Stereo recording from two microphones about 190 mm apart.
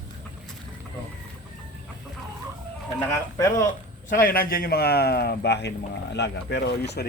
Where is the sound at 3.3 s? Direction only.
15° left (ahead or behind).